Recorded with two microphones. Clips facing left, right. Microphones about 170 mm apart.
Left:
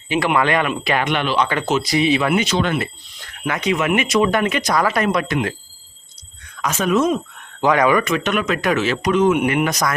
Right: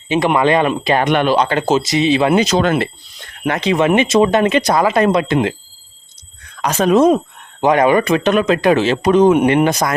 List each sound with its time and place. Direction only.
0.3 s speech: 25° right (ahead or behind)
0.9 s speech: 45° right (ahead or behind)
1.5 s speech: 30° right (ahead or behind)
3.4 s speech: 30° right (ahead or behind)
6.6 s speech: 35° right (ahead or behind)
7.6 s speech: 25° right (ahead or behind)